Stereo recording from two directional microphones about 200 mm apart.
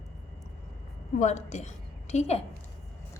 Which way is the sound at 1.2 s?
35° left (ahead or behind).